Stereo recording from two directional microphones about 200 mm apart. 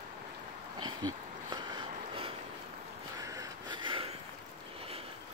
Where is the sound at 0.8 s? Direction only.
20° right (ahead or behind).